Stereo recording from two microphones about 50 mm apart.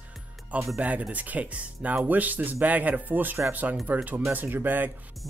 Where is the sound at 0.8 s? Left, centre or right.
Right.